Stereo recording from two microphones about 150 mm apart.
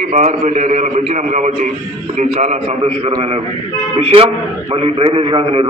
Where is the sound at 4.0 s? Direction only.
40° right (ahead or behind).